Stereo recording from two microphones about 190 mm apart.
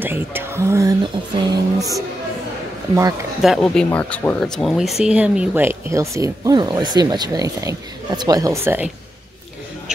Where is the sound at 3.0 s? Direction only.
15° right (ahead or behind).